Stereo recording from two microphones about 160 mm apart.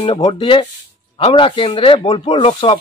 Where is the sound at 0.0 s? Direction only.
35° left (ahead or behind).